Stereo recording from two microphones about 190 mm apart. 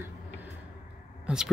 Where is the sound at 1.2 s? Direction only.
5° right (ahead or behind).